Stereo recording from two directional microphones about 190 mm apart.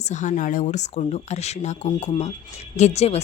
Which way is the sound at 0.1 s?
40° left (ahead or behind).